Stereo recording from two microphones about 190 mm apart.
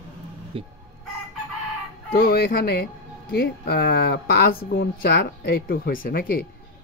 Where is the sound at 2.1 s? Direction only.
50° left (ahead or behind).